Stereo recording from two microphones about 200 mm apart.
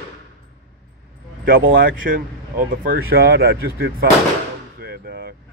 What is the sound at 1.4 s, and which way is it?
Speech, 45° right (ahead or behind).